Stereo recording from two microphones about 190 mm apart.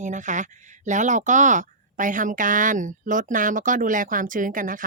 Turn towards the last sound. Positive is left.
turn(degrees=-45)  # may be behind; listen again after turning